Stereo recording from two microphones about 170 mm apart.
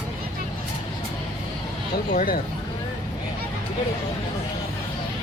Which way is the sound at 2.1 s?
55° left (ahead or behind).